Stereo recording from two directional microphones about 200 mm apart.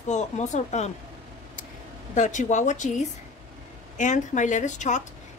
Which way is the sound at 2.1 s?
35° left (ahead or behind).